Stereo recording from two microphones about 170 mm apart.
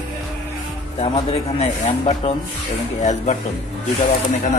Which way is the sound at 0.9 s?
35° left (ahead or behind).